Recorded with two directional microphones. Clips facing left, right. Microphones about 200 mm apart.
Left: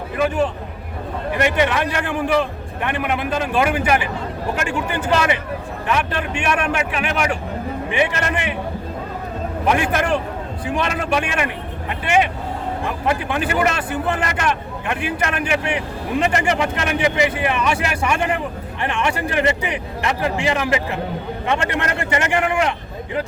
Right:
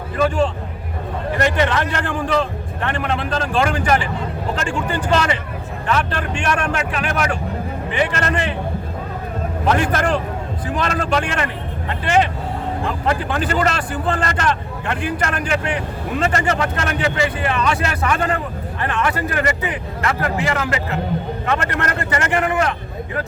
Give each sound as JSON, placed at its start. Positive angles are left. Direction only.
{"t": 1.4, "sound": "speech", "side_deg": 10}
{"t": 9.6, "sound": "speech", "side_deg": 10}